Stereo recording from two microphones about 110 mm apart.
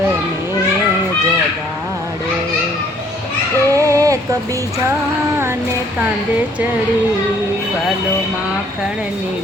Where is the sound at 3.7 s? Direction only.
30° right (ahead or behind).